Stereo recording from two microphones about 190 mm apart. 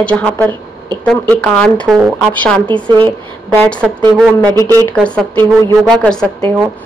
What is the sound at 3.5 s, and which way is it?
Speech, 5° left (ahead or behind).